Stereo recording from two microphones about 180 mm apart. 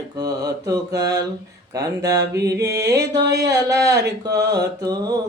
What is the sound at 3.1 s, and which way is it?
Mantra, 70° right (ahead or behind).